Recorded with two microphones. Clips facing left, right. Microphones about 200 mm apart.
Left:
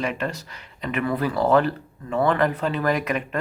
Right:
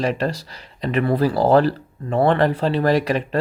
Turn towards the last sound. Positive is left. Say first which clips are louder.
# right 5 dB
turn(degrees=-35)  # may be behind; listen again after turning